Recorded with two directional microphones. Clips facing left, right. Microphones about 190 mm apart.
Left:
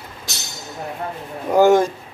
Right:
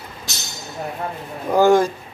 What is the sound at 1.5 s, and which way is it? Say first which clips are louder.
Speech: left 1 dB; 20° left (ahead or behind).